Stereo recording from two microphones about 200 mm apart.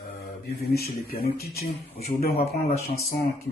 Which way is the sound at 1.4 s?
50° left (ahead or behind).